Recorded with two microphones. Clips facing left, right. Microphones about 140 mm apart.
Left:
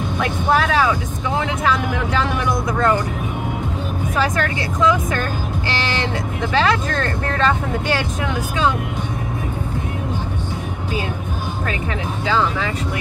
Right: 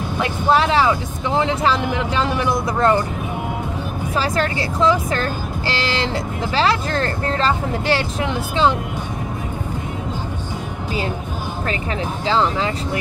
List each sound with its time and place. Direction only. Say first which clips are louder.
0.2 s speech: right 2 dB; 25° right (ahead or behind)
4.2 s speech: even; 30° right (ahead or behind)
6.5 s speech: even; 30° right (ahead or behind)
12.3 s speech: right 1 dB; 30° right (ahead or behind)